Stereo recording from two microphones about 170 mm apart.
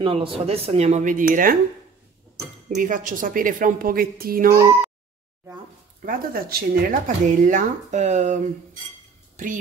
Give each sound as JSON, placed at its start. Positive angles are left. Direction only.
{"t": 0.0, "sound": "speech", "side_deg": -35}
{"t": 2.8, "sound": "a woman's voice", "side_deg": -50}
{"t": 6.0, "sound": "speech", "side_deg": -60}